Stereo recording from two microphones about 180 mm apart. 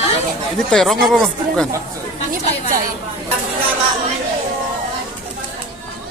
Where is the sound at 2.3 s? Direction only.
50° right (ahead or behind).